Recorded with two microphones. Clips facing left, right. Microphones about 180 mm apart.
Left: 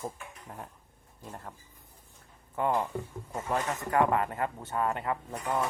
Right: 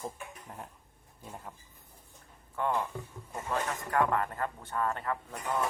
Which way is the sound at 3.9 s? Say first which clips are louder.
Left 3 dB; 15° left (ahead or behind).